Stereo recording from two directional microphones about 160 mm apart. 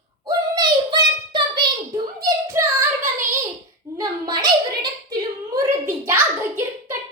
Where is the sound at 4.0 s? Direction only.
25° right (ahead or behind).